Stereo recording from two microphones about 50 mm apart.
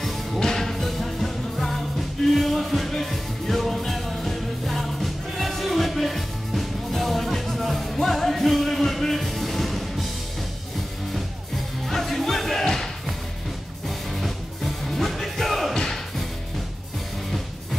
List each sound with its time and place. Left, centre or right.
0.0 s music: centre
11.8 s music: centre